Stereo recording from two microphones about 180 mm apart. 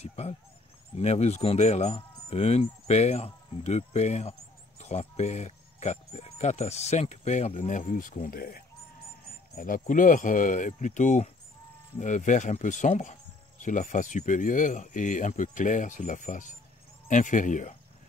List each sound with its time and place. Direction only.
0.0 s speech: 35° left (ahead or behind)